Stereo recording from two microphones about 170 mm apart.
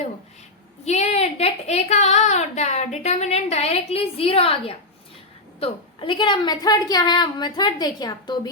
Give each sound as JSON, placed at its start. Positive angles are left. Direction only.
{"t": 0.9, "sound": "a woman's voice", "side_deg": 40}